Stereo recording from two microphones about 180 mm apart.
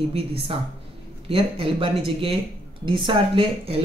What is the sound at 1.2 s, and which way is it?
Speech, 30° right (ahead or behind).